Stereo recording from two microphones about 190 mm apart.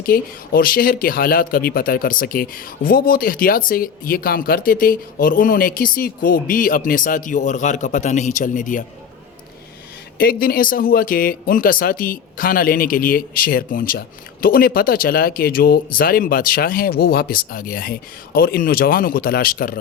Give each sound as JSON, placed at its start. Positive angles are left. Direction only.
{"t": 0.0, "sound": "speech", "side_deg": 50}
{"t": 10.2, "sound": "speech", "side_deg": 50}